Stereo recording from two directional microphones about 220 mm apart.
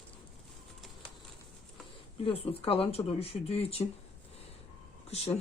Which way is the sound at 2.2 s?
25° left (ahead or behind).